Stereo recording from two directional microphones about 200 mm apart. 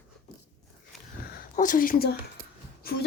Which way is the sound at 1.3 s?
40° left (ahead or behind).